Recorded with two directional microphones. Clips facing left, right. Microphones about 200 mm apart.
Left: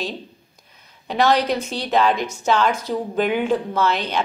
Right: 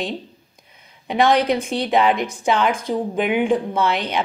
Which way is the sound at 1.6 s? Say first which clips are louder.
Right 4 dB; 55° right (ahead or behind).